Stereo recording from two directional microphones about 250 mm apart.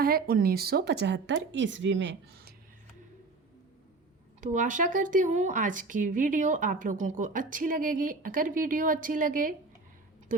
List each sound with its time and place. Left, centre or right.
0.0 s speech: right
4.4 s speech: right